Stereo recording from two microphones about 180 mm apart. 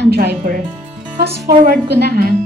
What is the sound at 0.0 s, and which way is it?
Music, 65° right (ahead or behind).